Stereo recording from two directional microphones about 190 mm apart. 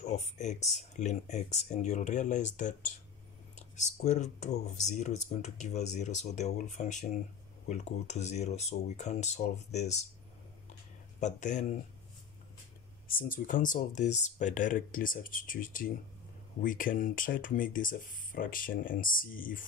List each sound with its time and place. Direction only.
0.1 s speech: 35° left (ahead or behind)
3.7 s speech: 40° left (ahead or behind)
11.1 s speech: 40° left (ahead or behind)
13.1 s speech: 45° left (ahead or behind)